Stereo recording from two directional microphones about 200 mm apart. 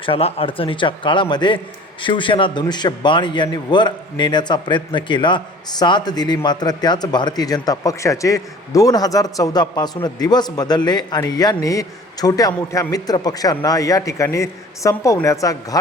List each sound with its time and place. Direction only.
0.0 s a man's voice: 30° left (ahead or behind)